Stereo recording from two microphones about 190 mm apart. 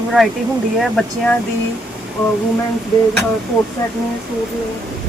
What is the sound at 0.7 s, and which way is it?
Speech, centre (ahead or behind).